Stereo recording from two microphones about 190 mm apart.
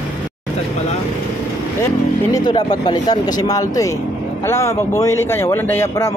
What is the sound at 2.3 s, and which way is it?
Speech, 20° left (ahead or behind).